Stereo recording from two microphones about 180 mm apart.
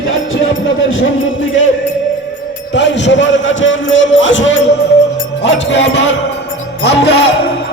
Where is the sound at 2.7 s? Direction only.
75° left (ahead or behind).